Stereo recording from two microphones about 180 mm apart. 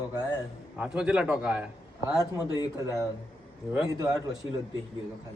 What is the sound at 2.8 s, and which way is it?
Speech, 15° right (ahead or behind).